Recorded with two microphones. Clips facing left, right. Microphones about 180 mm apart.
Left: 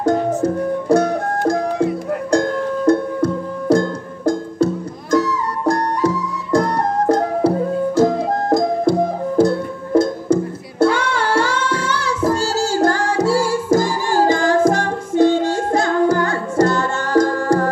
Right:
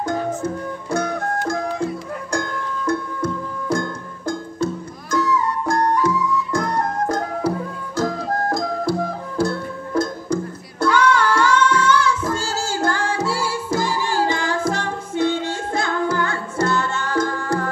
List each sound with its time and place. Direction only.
0.0 s music: 40° left (ahead or behind)
2.9 s music: 35° left (ahead or behind)
5.1 s music: 35° left (ahead or behind)